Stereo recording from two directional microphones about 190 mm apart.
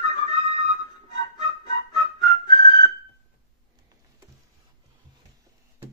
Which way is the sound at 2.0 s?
25° left (ahead or behind).